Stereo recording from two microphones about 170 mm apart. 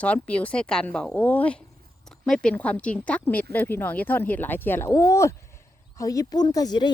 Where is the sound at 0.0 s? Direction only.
5° left (ahead or behind).